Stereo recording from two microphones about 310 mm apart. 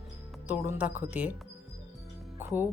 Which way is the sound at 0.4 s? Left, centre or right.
Centre.